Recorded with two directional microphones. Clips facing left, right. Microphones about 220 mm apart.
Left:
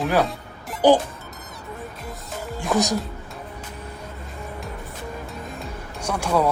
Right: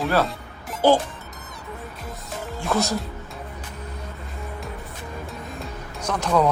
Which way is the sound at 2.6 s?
15° left (ahead or behind).